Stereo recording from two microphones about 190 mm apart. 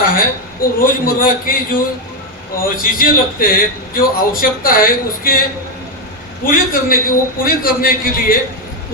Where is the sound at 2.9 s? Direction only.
50° left (ahead or behind).